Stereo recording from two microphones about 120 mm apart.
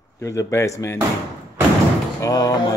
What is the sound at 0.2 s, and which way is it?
Mantra, 25° left (ahead or behind).